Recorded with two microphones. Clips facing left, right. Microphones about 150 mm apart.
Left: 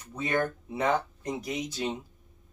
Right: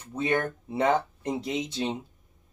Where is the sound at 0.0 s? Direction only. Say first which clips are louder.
Right 2 dB; 25° right (ahead or behind).